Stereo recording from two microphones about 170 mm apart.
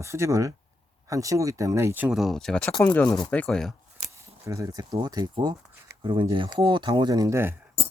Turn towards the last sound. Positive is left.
turn(degrees=-15)  # may be behind; listen again after turning